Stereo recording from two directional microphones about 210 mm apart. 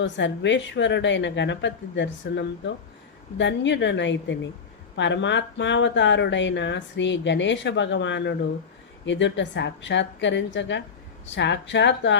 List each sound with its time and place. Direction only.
0.0 s speech: 60° left (ahead or behind)